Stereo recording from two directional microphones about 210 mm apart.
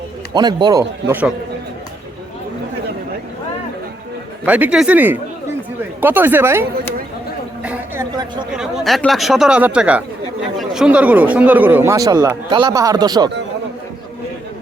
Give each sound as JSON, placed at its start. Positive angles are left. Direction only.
{"t": 0.3, "sound": "speech", "side_deg": -20}
{"t": 4.4, "sound": "speech", "side_deg": -5}
{"t": 7.6, "sound": "a sound", "side_deg": -5}
{"t": 8.5, "sound": "speech", "side_deg": 0}